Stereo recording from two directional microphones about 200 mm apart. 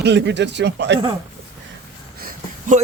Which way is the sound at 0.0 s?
60° right (ahead or behind).